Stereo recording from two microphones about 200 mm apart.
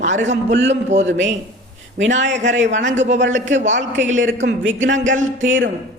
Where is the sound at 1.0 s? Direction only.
65° right (ahead or behind).